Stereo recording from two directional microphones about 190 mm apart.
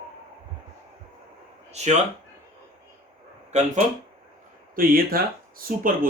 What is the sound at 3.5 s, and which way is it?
Speech, 35° right (ahead or behind).